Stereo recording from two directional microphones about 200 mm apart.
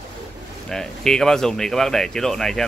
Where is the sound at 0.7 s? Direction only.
Centre (ahead or behind).